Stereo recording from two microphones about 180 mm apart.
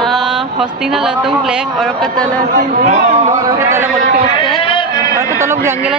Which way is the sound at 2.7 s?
40° right (ahead or behind).